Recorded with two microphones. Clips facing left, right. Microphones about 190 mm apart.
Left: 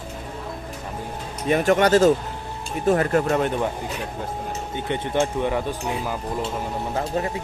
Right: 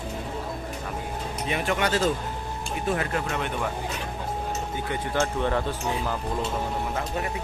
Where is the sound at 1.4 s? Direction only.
45° left (ahead or behind).